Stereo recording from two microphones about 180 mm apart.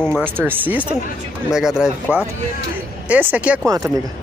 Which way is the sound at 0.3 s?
10° right (ahead or behind).